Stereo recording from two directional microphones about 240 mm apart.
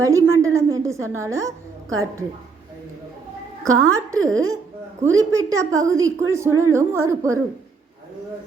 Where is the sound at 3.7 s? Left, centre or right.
Right.